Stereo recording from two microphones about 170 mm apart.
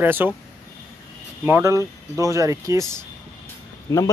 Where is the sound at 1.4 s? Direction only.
15° right (ahead or behind).